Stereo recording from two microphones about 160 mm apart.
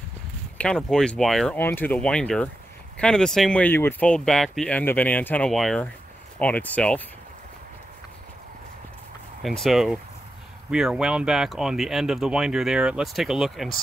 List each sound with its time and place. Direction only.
0.6 s speech: 5° left (ahead or behind)
9.4 s speech: centre (ahead or behind)